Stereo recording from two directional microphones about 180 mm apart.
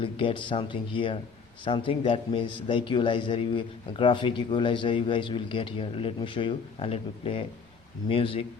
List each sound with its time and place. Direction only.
0.0 s a man's voice: 30° left (ahead or behind)